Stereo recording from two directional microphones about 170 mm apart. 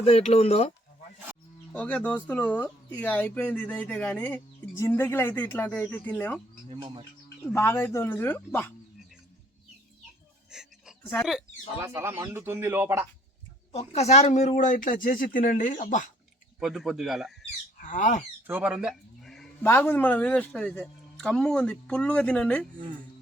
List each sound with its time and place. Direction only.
0.0 s speech: 40° left (ahead or behind)
1.7 s speech: 10° left (ahead or behind)
6.7 s speech: 30° right (ahead or behind)
7.4 s speech: 15° left (ahead or behind)
10.5 s a sound: 5° right (ahead or behind)
11.8 s speech: 15° right (ahead or behind)
13.7 s speech: 40° left (ahead or behind)
16.6 s speech: centre (ahead or behind)
17.7 s a sound: 50° left (ahead or behind)
18.4 s a sound: 10° right (ahead or behind)
19.6 s speech: 10° left (ahead or behind)